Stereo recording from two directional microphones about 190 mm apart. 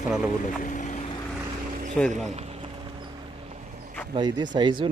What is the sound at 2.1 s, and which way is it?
Clip-clop, 35° right (ahead or behind).